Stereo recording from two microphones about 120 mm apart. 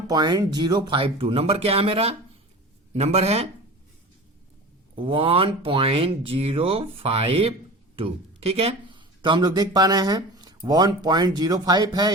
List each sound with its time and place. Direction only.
0.1 s speech: 35° right (ahead or behind); by 3.5 s 60° right (ahead or behind)
4.9 s speech: 50° right (ahead or behind); by 12.1 s 35° right (ahead or behind)